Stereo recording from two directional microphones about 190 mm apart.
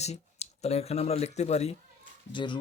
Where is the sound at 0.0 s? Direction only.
35° left (ahead or behind).